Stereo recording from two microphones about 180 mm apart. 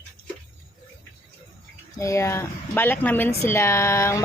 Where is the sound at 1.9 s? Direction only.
15° left (ahead or behind).